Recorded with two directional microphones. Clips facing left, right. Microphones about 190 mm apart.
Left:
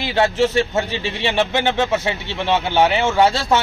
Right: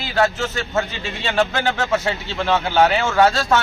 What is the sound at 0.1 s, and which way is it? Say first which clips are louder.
A man's voice: left 3 dB; 25° left (ahead or behind).